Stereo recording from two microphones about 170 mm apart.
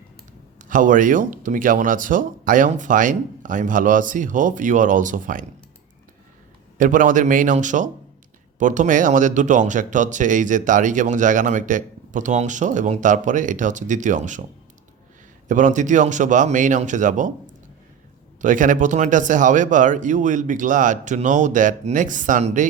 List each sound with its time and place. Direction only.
0.6 s speech: 50° right (ahead or behind)
6.7 s speech: 50° right (ahead or behind)
15.4 s speech: 50° right (ahead or behind)